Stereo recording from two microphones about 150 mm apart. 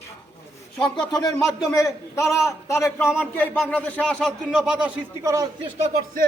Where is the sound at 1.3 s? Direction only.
5° left (ahead or behind).